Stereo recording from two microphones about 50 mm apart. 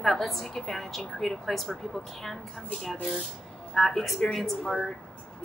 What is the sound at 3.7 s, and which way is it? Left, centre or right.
Speech, centre.